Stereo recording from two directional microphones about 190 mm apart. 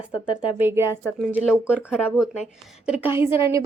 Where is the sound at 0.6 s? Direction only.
15° right (ahead or behind).